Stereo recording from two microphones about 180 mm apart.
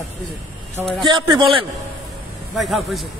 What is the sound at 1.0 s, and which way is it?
Speech, 25° right (ahead or behind).